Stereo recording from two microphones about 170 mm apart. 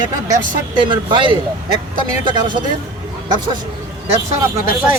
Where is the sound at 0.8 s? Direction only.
30° right (ahead or behind).